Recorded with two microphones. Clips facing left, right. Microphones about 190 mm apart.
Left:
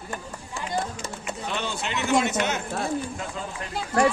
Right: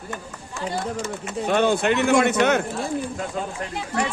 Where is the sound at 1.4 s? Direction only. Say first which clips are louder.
Right 13 dB; 55° right (ahead or behind).